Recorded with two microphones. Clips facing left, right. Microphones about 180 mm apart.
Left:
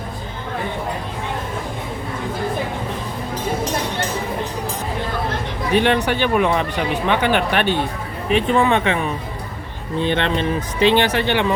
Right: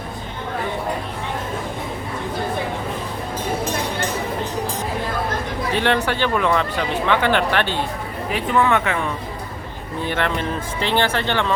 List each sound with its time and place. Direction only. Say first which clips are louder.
5.7 s speech: left 4 dB; 15° left (ahead or behind)
10.0 s speech: left 3 dB; 25° left (ahead or behind)